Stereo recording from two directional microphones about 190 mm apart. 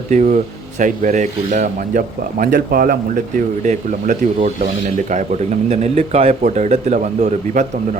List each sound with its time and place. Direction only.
0.1 s speech: 40° right (ahead or behind)